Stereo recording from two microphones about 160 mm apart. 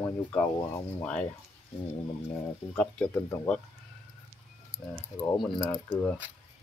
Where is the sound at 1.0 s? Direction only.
5° left (ahead or behind).